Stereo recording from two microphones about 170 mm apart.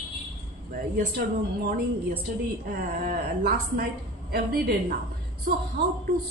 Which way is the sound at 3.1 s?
55° right (ahead or behind).